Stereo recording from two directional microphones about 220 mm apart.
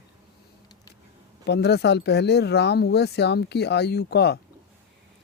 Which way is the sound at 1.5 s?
50° left (ahead or behind).